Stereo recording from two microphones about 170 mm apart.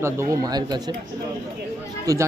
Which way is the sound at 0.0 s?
20° right (ahead or behind).